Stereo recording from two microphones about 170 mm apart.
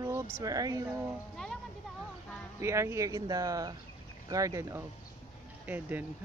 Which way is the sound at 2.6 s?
15° right (ahead or behind).